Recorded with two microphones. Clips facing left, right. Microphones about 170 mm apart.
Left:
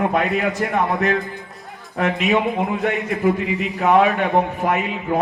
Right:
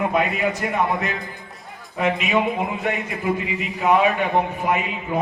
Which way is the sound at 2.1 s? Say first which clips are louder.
Left 2 dB; centre (ahead or behind).